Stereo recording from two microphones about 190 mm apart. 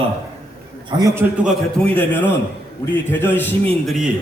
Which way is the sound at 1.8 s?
10° left (ahead or behind).